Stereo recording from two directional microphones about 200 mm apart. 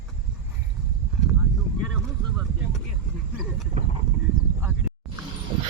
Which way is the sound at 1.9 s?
5° right (ahead or behind).